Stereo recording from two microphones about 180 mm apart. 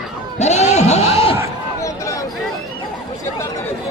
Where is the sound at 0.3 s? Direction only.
40° left (ahead or behind).